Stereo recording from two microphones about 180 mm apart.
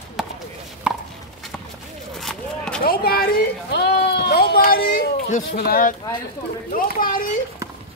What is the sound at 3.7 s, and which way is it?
Sheep, 65° left (ahead or behind).